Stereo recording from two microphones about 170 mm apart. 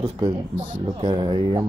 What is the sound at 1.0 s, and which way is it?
Speech, 30° right (ahead or behind).